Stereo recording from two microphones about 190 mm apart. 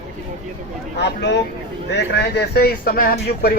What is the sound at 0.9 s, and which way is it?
A man's voice, 65° left (ahead or behind).